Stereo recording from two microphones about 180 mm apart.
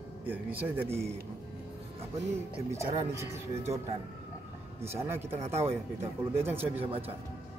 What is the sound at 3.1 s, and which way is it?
Speech, 15° right (ahead or behind).